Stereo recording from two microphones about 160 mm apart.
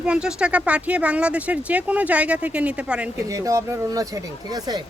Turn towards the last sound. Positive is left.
turn(degrees=-25)  # may be behind; listen again after turning